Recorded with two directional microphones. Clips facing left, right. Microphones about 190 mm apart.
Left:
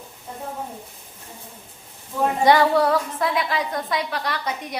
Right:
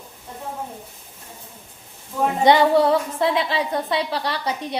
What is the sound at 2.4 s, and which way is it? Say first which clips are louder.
A woman's voice: right 2 dB; 20° right (ahead or behind).